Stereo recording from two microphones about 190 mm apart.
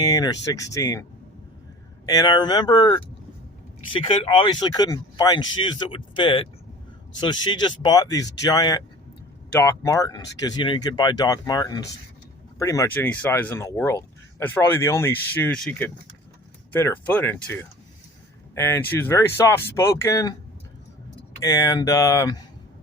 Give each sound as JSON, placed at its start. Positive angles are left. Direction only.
{"t": 0.0, "sound": "speech", "side_deg": 20}
{"t": 2.0, "sound": "speech", "side_deg": 20}
{"t": 21.4, "sound": "speech", "side_deg": 20}